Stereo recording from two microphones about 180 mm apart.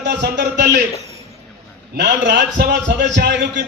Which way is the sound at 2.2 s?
75° right (ahead or behind).